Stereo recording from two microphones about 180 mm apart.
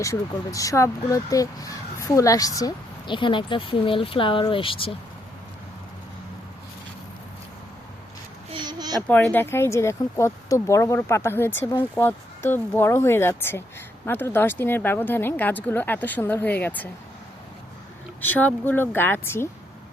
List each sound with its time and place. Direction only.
0.0 s speech: 20° left (ahead or behind)
8.6 s a sound: 25° right (ahead or behind)
9.0 s speech: 10° left (ahead or behind)
18.2 s speech: 10° left (ahead or behind)